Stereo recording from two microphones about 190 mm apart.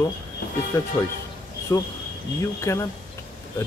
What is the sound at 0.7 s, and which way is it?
Speech, 15° left (ahead or behind).